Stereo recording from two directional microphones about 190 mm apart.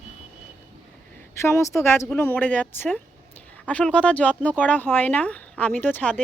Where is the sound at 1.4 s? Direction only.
15° left (ahead or behind).